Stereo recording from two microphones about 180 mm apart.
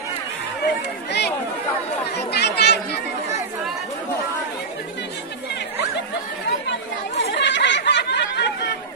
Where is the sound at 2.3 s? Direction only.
65° left (ahead or behind).